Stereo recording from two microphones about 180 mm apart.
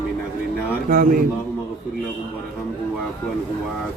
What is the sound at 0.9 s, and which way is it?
Speech, 50° right (ahead or behind).